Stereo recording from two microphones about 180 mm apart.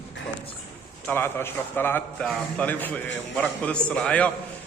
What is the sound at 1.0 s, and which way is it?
A man's voice, 10° left (ahead or behind).